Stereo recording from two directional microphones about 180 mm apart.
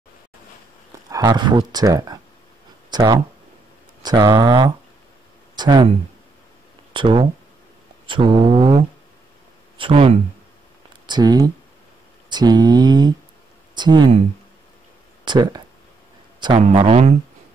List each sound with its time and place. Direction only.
1.1 s speech: 25° right (ahead or behind)
6.9 s speech: 25° right (ahead or behind)
15.2 s speech: 25° right (ahead or behind)